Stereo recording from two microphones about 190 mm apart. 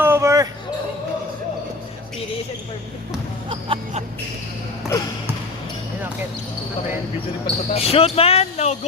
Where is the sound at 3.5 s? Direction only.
30° right (ahead or behind).